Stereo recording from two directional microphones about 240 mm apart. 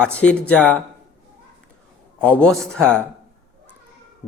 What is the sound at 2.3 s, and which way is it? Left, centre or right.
Speech, centre.